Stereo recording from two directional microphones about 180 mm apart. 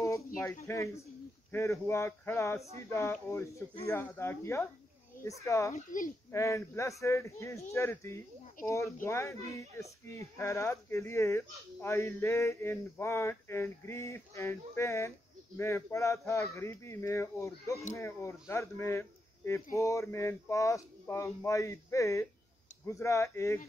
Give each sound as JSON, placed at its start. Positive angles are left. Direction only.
{"t": 0.7, "sound": "speech", "side_deg": 15}